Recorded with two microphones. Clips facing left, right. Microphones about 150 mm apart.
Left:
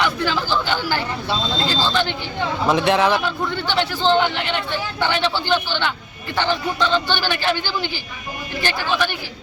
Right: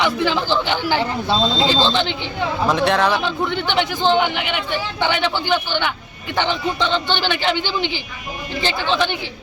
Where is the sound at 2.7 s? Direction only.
Centre (ahead or behind).